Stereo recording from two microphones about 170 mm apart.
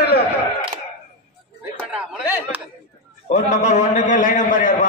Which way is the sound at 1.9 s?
10° right (ahead or behind).